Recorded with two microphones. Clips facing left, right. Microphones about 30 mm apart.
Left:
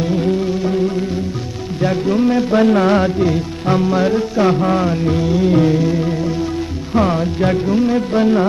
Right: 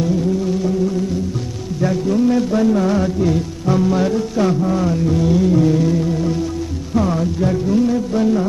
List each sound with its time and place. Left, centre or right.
0.4 s music: left
1.8 s a man's voice: left
2.6 s music: left
3.8 s music: left
5.2 s music: centre
6.9 s music: left